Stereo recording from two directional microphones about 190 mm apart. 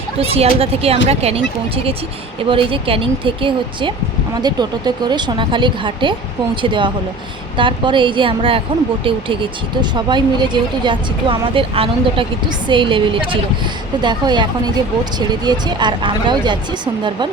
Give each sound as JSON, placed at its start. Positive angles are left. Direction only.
{"t": 0.2, "sound": "speech", "side_deg": -30}